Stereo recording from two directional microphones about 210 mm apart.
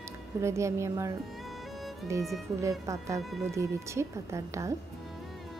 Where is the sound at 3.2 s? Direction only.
Centre (ahead or behind).